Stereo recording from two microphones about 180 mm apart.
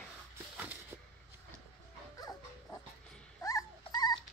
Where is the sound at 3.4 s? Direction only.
20° left (ahead or behind).